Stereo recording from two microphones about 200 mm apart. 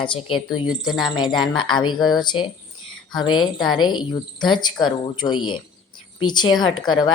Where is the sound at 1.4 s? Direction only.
25° left (ahead or behind).